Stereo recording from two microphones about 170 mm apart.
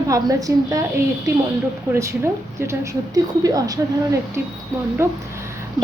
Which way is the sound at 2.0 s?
15° right (ahead or behind).